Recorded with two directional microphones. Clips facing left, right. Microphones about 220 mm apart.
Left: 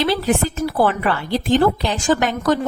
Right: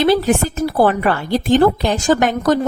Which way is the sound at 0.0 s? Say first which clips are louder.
Right 4 dB; 45° right (ahead or behind).